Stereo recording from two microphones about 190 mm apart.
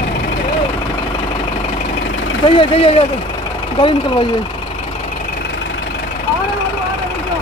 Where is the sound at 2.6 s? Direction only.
30° left (ahead or behind).